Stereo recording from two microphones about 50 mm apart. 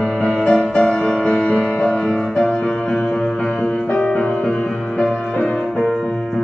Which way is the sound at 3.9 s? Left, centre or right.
Left.